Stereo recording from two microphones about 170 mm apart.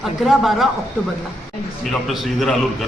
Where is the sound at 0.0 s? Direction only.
Centre (ahead or behind).